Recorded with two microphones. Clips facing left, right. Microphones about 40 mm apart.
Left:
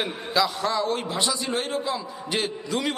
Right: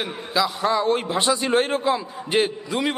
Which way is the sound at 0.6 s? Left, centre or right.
Right.